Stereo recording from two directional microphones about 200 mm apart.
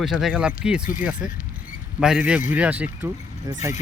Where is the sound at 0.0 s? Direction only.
Centre (ahead or behind).